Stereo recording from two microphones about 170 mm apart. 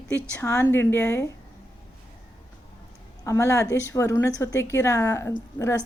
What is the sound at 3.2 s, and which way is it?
A woman's voice, 15° left (ahead or behind).